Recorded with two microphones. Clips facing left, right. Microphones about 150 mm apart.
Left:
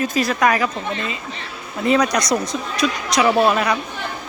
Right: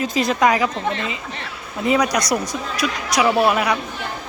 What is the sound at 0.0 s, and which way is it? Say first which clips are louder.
A woman's voice: even; 20° right (ahead or behind).